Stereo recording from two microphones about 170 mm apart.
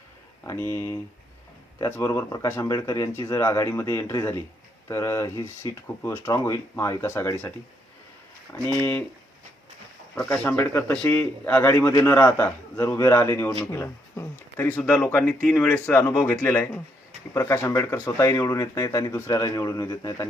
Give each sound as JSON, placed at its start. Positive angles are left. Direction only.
{"t": 0.4, "sound": "a man's voice", "side_deg": 15}
{"t": 10.2, "sound": "a man's voice", "side_deg": 5}